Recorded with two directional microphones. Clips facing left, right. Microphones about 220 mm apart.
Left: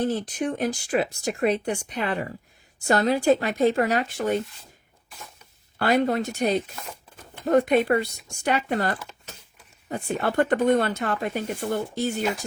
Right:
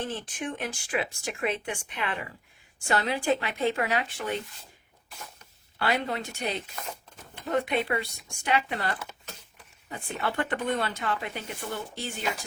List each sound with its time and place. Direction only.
0.0 s speech: 40° left (ahead or behind)
5.8 s speech: 45° left (ahead or behind)
9.0 s speech: centre (ahead or behind)
9.9 s speech: 40° left (ahead or behind)